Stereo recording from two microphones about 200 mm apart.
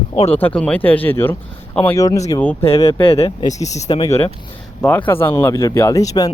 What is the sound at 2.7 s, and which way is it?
Speech, 30° left (ahead or behind).